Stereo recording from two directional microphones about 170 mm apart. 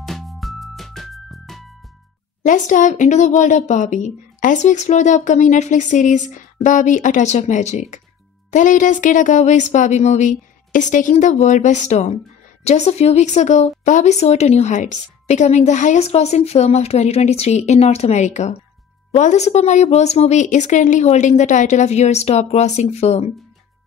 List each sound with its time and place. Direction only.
0.0 s music: centre (ahead or behind)
2.4 s speech: 50° left (ahead or behind)